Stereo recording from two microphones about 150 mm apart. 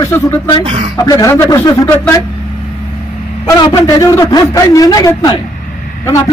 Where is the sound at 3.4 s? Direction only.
25° left (ahead or behind).